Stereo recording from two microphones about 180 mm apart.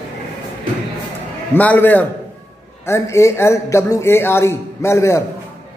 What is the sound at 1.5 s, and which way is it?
A man's voice, 10° left (ahead or behind).